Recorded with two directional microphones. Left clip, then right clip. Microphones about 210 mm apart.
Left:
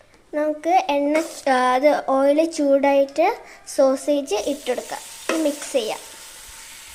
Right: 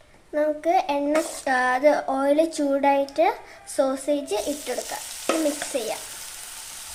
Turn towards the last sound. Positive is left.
turn(degrees=15)  # may be behind; listen again after turning